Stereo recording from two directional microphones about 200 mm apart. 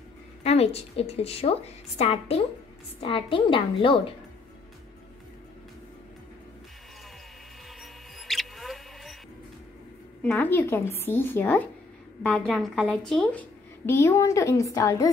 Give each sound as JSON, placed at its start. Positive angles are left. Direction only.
{"t": 0.4, "sound": "a woman's voice", "side_deg": 30}
{"t": 8.3, "sound": "mouse", "side_deg": 0}
{"t": 10.2, "sound": "a woman's voice", "side_deg": 10}